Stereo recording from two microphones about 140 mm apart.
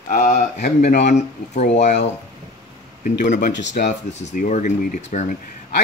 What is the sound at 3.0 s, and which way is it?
Speech, 65° left (ahead or behind).